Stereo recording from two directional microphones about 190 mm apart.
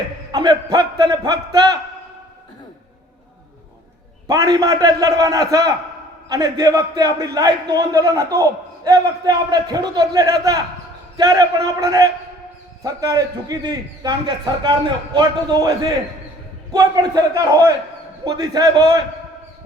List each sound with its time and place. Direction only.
0.3 s a man's voice: 20° right (ahead or behind)
4.3 s a man's voice: 20° right (ahead or behind)
16.7 s a man's voice: 20° right (ahead or behind)